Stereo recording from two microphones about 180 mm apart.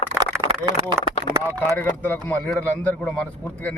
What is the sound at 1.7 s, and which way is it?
A man's voice, 10° left (ahead or behind).